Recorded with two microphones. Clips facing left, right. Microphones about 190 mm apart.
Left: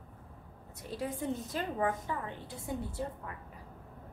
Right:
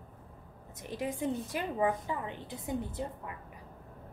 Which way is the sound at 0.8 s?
15° right (ahead or behind).